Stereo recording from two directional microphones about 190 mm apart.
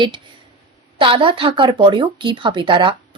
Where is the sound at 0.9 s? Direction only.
25° right (ahead or behind).